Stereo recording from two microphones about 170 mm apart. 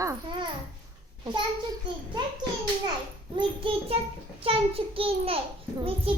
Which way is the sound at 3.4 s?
30° right (ahead or behind).